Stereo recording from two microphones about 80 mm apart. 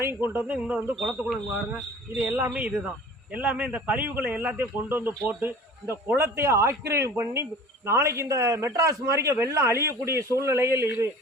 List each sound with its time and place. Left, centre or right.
0.0 s a man's voice: right
0.5 s speech: centre
2.1 s a man's voice: right
2.5 s a man's voice: centre; by 11.1 s right